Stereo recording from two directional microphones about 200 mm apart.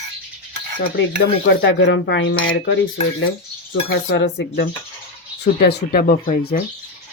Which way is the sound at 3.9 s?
55° left (ahead or behind).